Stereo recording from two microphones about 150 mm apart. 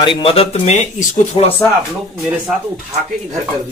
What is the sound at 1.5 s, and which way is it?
Speech, centre (ahead or behind).